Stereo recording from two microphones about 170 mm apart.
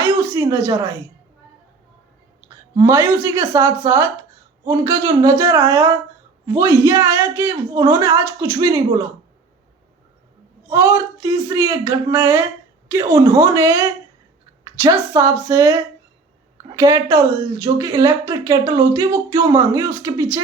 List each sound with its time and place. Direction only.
0.0 s a sound: 20° right (ahead or behind)
0.6 s speech: 20° right (ahead or behind)
2.7 s a woman's voice: 15° right (ahead or behind)
10.7 s a woman's voice: 15° right (ahead or behind)
16.7 s speech: 20° right (ahead or behind)